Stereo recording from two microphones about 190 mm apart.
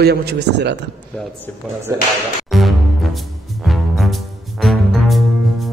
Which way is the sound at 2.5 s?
Centre (ahead or behind).